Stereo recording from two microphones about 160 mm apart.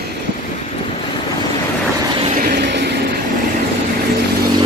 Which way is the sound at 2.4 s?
75° right (ahead or behind).